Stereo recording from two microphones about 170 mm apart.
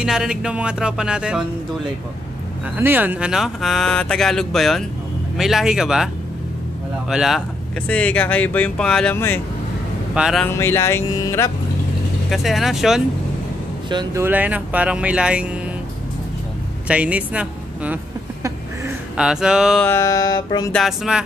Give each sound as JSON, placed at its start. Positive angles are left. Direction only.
{"t": 0.0, "sound": "speech", "side_deg": -5}
{"t": 2.8, "sound": "speech", "side_deg": -10}
{"t": 7.1, "sound": "speech", "side_deg": 0}
{"t": 10.1, "sound": "speech", "side_deg": -5}
{"t": 10.4, "sound": "speech", "side_deg": 15}
{"t": 12.3, "sound": "speech", "side_deg": 0}
{"t": 13.8, "sound": "speech", "side_deg": -25}
{"t": 14.2, "sound": "speech", "side_deg": -10}
{"t": 16.8, "sound": "speech", "side_deg": -5}
{"t": 19.1, "sound": "speech", "side_deg": -5}
{"t": 19.9, "sound": "music", "side_deg": 15}
{"t": 20.7, "sound": "speech", "side_deg": 0}